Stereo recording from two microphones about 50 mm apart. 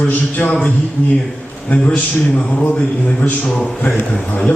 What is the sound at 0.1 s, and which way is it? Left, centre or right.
Speech, left.